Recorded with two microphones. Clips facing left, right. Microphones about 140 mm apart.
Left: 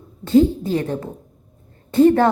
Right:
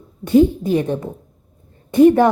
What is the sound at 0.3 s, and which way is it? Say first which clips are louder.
Speech: right 2 dB; 15° right (ahead or behind).